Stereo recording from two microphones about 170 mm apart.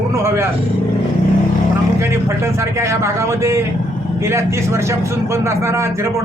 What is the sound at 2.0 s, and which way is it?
A man's voice, 15° right (ahead or behind).